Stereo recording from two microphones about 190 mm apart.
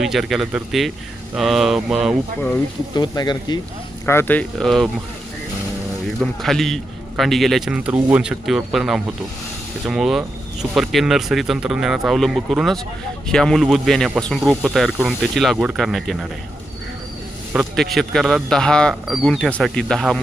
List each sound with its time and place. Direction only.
0.0 s speech: centre (ahead or behind)
2.9 s speech: 25° left (ahead or behind)
4.0 s speech: 10° left (ahead or behind)
6.1 s speech: centre (ahead or behind)
17.5 s speech: centre (ahead or behind)